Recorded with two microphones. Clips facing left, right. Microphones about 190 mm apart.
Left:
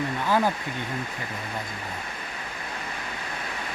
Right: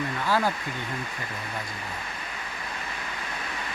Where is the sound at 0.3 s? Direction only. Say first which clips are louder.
Left 2 dB; 15° left (ahead or behind).